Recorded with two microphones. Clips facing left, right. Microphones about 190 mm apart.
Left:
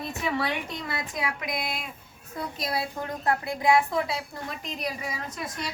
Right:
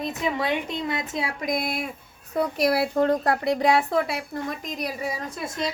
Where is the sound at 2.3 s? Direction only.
70° right (ahead or behind).